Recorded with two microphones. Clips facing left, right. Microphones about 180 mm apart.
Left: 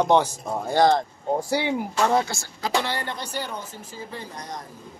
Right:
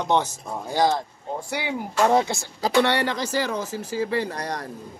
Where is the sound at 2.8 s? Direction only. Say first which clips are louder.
Right 7 dB; 85° right.